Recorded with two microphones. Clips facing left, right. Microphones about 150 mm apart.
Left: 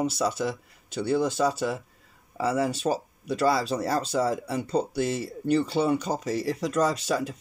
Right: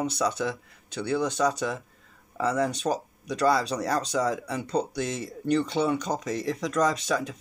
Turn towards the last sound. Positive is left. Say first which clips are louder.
# even
turn(degrees=5)  # may be behind; listen again after turning